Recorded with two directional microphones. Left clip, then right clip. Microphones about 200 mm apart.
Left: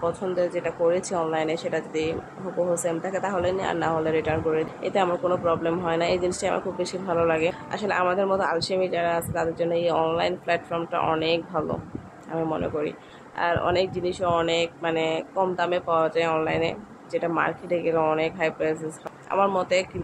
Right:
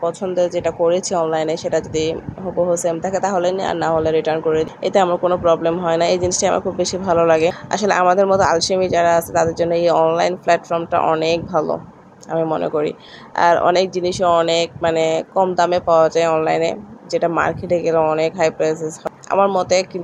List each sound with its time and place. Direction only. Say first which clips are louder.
0.0 s speech: right 7 dB; 20° right (ahead or behind)